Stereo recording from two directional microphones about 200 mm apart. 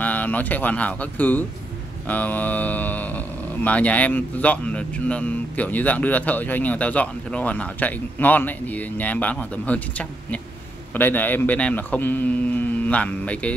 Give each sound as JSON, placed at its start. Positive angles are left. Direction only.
{"t": 0.0, "sound": "speech", "side_deg": 10}